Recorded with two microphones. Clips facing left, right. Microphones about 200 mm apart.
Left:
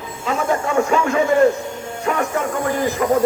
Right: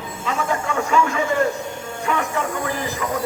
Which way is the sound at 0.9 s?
45° left (ahead or behind).